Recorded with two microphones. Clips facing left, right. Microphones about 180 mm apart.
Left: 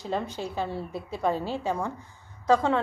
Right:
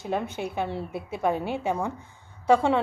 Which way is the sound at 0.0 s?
15° right (ahead or behind).